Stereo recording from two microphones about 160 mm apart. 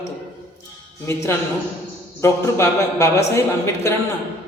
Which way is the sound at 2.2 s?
20° left (ahead or behind).